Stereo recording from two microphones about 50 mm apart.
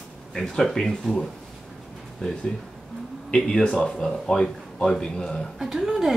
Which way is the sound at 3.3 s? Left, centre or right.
Centre.